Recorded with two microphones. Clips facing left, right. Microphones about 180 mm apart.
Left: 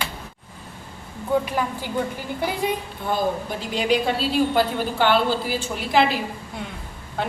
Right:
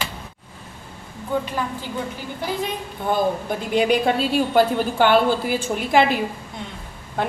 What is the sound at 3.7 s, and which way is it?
A woman's voice, 50° right (ahead or behind).